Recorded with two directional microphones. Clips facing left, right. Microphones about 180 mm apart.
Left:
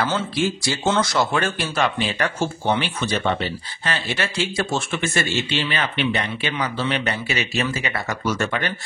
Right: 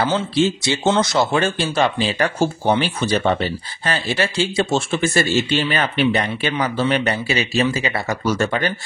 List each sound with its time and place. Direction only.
0.0 s speech: 25° right (ahead or behind)